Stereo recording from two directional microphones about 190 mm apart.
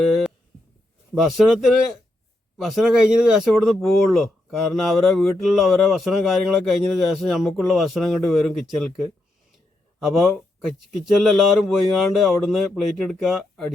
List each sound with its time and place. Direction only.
1.1 s speech: centre (ahead or behind)